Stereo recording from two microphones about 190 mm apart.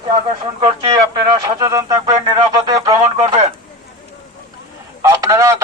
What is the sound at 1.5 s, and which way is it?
Speech, 20° right (ahead or behind).